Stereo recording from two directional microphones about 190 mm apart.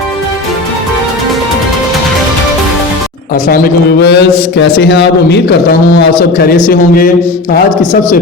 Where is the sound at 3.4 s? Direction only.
55° left (ahead or behind).